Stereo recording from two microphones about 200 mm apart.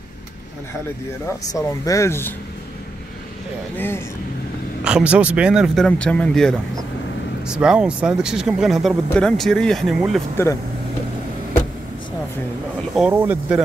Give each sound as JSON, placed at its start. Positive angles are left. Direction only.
{"t": 1.5, "sound": "speech", "side_deg": 15}
{"t": 3.7, "sound": "speech", "side_deg": 10}
{"t": 4.8, "sound": "speech", "side_deg": -5}
{"t": 10.3, "sound": "speech", "side_deg": 15}
{"t": 12.9, "sound": "speech", "side_deg": -5}